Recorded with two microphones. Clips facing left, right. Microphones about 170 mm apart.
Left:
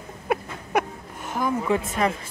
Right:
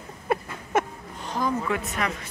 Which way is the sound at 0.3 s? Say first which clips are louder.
Left 1 dB; centre (ahead or behind).